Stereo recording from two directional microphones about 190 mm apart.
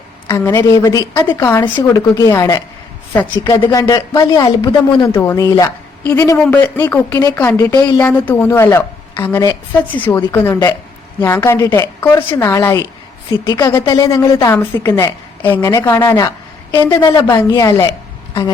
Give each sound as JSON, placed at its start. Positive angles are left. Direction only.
{"t": 0.3, "sound": "a woman's voice", "side_deg": 15}